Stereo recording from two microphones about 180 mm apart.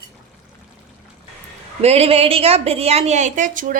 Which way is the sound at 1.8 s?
35° right (ahead or behind).